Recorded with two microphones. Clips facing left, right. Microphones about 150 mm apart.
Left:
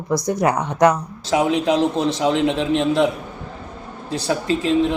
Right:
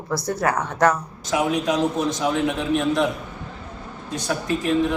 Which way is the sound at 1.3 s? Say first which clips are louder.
Left 4 dB; 25° left (ahead or behind).